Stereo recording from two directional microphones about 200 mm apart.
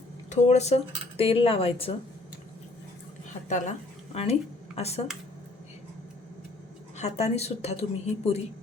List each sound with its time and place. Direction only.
0.3 s speech: 35° left (ahead or behind)
4.1 s speech: 30° left (ahead or behind)
6.9 s a woman's voice: 35° left (ahead or behind)